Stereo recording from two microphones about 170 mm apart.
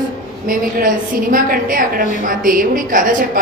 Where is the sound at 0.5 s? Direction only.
55° right (ahead or behind).